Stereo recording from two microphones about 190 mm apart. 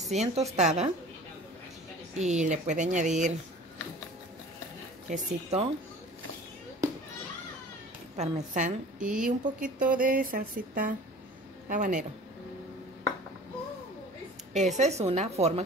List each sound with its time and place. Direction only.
0.1 s speech: 35° right (ahead or behind)
2.1 s speech: 40° right (ahead or behind)
5.1 s speech: 35° right (ahead or behind)
8.2 s speech: 40° right (ahead or behind)
9.4 s music: 45° right (ahead or behind)
14.5 s speech: 35° right (ahead or behind)